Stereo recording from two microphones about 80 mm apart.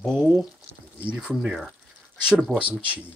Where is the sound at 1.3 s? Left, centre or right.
Centre.